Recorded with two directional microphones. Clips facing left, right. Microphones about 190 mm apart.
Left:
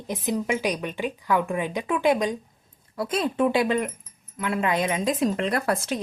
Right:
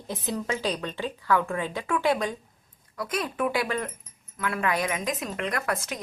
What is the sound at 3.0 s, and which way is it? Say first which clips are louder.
Speech: left 5 dB; 25° left (ahead or behind).